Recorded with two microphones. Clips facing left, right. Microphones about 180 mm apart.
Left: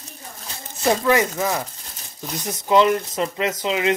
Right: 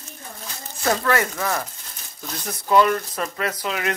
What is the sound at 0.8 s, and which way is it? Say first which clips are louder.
Speech: left 3 dB; 15° left (ahead or behind).